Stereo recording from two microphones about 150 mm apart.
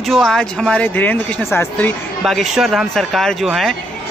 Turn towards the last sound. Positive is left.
turn(degrees=0)  # may be behind; listen again after turning